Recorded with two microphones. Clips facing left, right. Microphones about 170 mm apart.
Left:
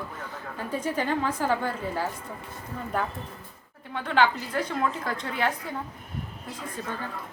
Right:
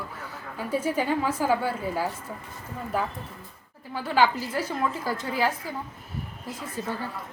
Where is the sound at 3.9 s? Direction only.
5° right (ahead or behind).